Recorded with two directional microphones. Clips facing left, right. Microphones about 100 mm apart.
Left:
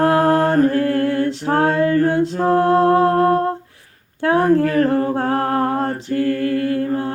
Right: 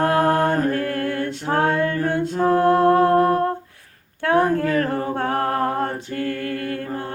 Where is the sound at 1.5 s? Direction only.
25° left (ahead or behind).